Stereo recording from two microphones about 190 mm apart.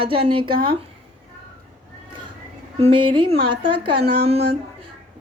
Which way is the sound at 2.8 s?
25° right (ahead or behind).